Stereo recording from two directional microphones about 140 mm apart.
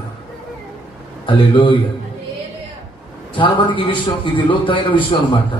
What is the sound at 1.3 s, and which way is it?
Speech, 35° left (ahead or behind).